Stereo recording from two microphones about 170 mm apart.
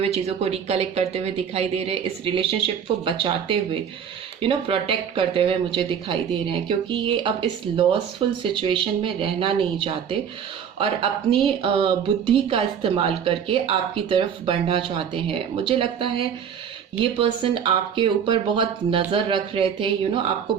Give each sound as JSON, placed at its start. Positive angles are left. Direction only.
{"t": 0.0, "sound": "a woman's voice", "side_deg": -35}